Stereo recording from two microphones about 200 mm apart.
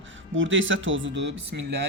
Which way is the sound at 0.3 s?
70° right (ahead or behind).